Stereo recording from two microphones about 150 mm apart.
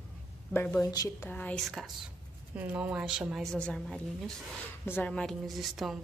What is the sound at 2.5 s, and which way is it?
Speech, 10° right (ahead or behind).